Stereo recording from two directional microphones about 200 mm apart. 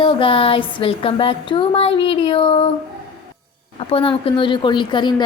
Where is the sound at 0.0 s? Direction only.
25° left (ahead or behind).